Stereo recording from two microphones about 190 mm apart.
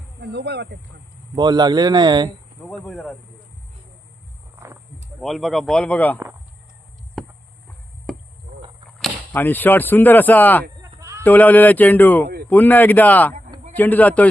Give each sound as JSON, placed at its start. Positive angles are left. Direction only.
{"t": 0.2, "sound": "speech", "side_deg": -60}
{"t": 1.4, "sound": "speech", "side_deg": -25}
{"t": 2.6, "sound": "speech", "side_deg": 5}
{"t": 5.2, "sound": "speech", "side_deg": 0}
{"t": 7.2, "sound": "a sound", "side_deg": 0}
{"t": 9.0, "sound": "speech", "side_deg": 10}
{"t": 10.8, "sound": "bleat", "side_deg": -15}
{"t": 11.2, "sound": "speech", "side_deg": 10}